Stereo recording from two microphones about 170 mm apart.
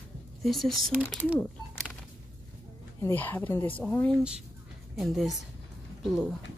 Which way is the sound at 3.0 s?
10° left (ahead or behind).